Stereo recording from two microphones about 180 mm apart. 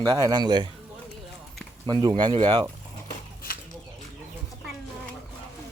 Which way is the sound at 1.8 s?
25° right (ahead or behind).